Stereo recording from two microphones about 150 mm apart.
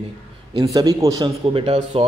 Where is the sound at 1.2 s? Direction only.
35° right (ahead or behind).